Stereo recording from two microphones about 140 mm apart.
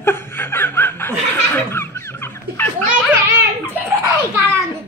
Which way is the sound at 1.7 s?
15° left (ahead or behind).